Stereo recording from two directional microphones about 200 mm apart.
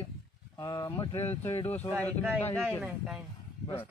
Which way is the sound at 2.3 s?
5° left (ahead or behind).